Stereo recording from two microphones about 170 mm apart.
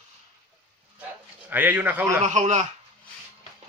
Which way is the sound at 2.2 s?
45° right (ahead or behind).